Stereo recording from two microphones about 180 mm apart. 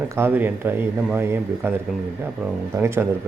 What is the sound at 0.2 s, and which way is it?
Speech, 10° right (ahead or behind).